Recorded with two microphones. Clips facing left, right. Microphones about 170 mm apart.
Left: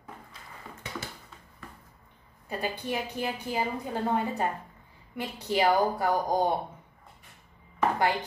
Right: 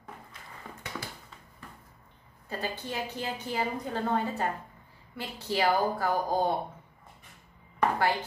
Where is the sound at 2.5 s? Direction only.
15° left (ahead or behind).